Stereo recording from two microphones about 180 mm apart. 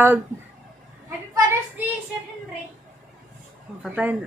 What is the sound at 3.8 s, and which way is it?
Speech, 10° right (ahead or behind).